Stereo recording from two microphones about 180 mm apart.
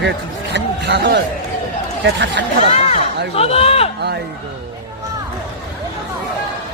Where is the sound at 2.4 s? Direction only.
70° right (ahead or behind).